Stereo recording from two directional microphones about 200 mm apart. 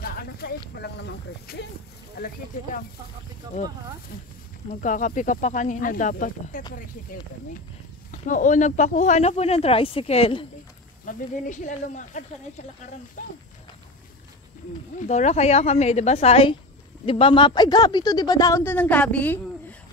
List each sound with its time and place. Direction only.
0.0 s snake: 50° left (ahead or behind)
2.1 s speech: 45° left (ahead or behind)
3.4 s speech: 20° right (ahead or behind)
4.8 s speech: 40° left (ahead or behind)
8.1 s speech: 40° left (ahead or behind)
15.0 s speech: 35° left (ahead or behind); by 19.4 s 10° left (ahead or behind)